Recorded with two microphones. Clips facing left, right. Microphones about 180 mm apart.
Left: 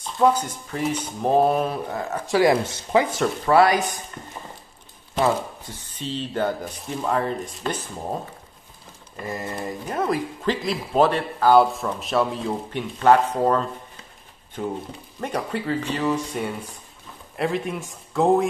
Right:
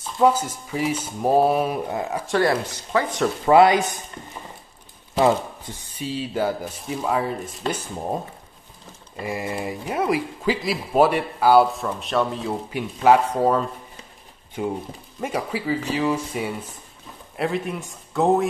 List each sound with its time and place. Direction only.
0.0 s speech: 5° right (ahead or behind)
2.7 s speech: 15° left (ahead or behind)
3.4 s speech: 20° right (ahead or behind)
5.8 s speech: 10° right (ahead or behind)
9.2 s speech: 10° right (ahead or behind)
11.7 s speech: centre (ahead or behind)